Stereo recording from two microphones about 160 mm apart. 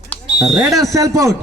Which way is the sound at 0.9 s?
20° right (ahead or behind).